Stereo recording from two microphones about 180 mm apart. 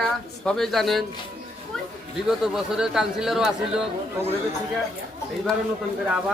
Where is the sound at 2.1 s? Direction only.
Centre (ahead or behind).